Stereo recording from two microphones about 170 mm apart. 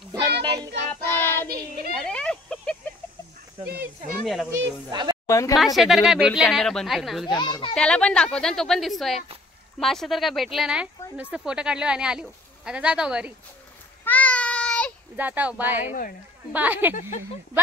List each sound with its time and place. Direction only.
0.1 s child singing: 25° right (ahead or behind)
1.1 s child singing: 10° left (ahead or behind)
1.5 s child singing: 65° right (ahead or behind)
2.0 s a sound: 5° left (ahead or behind)
4.2 s speech: centre (ahead or behind)
4.5 s speech: 25° right (ahead or behind)
5.3 s a woman's voice: 20° left (ahead or behind)
5.8 s speech: centre (ahead or behind)
7.2 s a child's voice: 25° left (ahead or behind)
7.7 s speech: 5° left (ahead or behind)
14.0 s child singing: 10° left (ahead or behind)
15.1 s speech: 10° right (ahead or behind)
15.9 s speech: 55° left (ahead or behind)
16.5 s speech: 10° right (ahead or behind)